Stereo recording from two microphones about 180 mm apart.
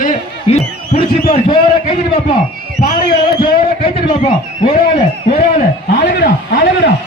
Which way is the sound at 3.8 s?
30° left (ahead or behind).